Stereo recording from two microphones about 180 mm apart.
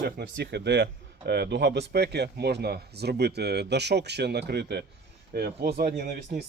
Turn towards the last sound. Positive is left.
turn(degrees=-60)  # may be behind; listen again after turning